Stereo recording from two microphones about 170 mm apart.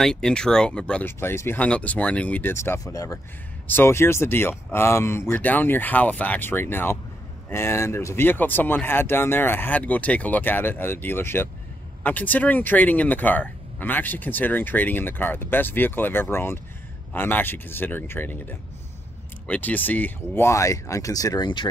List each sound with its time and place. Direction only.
0.0 s speech: 5° left (ahead or behind); by 21.6 s 25° left (ahead or behind)